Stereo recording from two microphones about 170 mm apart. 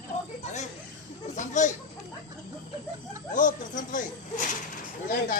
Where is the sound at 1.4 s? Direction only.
45° left (ahead or behind).